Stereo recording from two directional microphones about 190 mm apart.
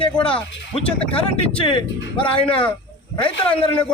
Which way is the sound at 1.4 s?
30° left (ahead or behind).